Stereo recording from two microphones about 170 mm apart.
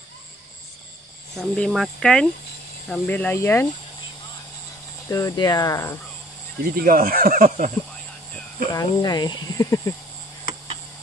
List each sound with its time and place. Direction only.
1.3 s speech: centre (ahead or behind)
5.0 s speech: 20° left (ahead or behind)
6.8 s speech: 55° right (ahead or behind)
8.7 s speech: 25° left (ahead or behind)